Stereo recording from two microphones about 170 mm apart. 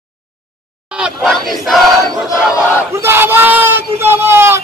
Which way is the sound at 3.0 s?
15° right (ahead or behind).